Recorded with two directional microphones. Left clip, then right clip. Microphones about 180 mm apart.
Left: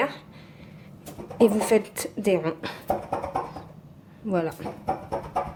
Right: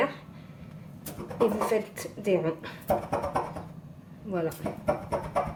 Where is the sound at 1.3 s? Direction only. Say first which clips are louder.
Left 5 dB; 55° left (ahead or behind).